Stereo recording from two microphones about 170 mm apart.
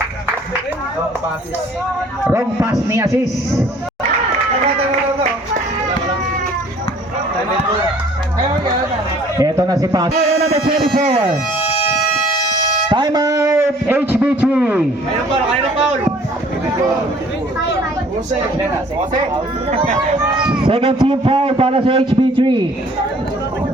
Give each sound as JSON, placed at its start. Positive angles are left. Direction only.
{"t": 2.2, "sound": "speech", "side_deg": -15}
{"t": 9.4, "sound": "a man's voice", "side_deg": -20}
{"t": 10.2, "sound": "a sound", "side_deg": -35}
{"t": 10.9, "sound": "a man's voice", "side_deg": -40}
{"t": 12.9, "sound": "a man's voice", "side_deg": -25}
{"t": 20.3, "sound": "speech", "side_deg": -5}
{"t": 20.6, "sound": "a man's voice", "side_deg": -30}